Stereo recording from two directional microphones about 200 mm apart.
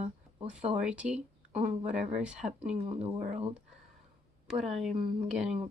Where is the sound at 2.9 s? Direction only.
35° right (ahead or behind).